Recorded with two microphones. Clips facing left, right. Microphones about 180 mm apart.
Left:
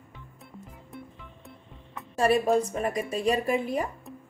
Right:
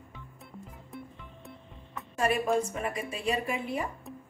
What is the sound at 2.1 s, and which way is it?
A woman's voice, 35° left (ahead or behind).